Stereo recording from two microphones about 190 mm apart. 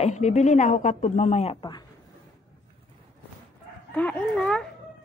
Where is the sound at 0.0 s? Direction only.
35° left (ahead or behind).